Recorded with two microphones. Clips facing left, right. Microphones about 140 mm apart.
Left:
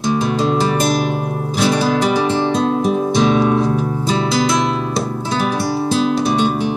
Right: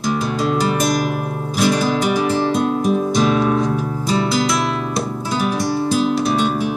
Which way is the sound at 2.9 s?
25° left (ahead or behind).